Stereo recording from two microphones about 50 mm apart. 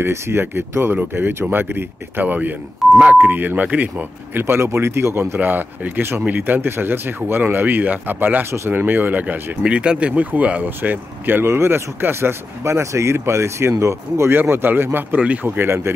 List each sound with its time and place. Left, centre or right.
0.0 s speech: right
1.1 s speech: right
2.8 s beep: centre
3.2 s speech: right
4.3 s speech: right
9.6 s speech: right
10.8 s speech: right
11.4 s speech: right
14.3 s speech: right